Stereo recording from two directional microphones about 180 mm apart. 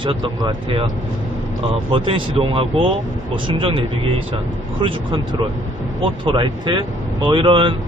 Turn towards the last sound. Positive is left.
turn(degrees=-30)  # may be behind; listen again after turning